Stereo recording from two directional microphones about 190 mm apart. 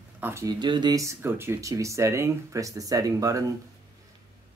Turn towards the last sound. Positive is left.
turn(degrees=-20)  # may be behind; listen again after turning